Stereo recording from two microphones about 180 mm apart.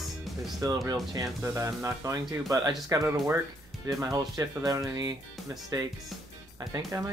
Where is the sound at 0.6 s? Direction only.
20° right (ahead or behind).